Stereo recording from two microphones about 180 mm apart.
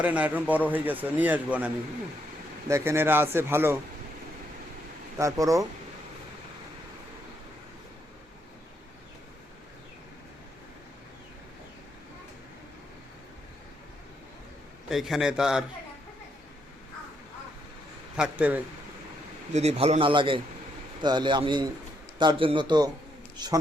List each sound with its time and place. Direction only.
0.0 s speech: 10° right (ahead or behind)
5.1 s a man's voice: 20° right (ahead or behind)
14.8 s a man's voice: centre (ahead or behind)
18.2 s speech: 10° right (ahead or behind)
19.5 s a man's voice: 35° right (ahead or behind)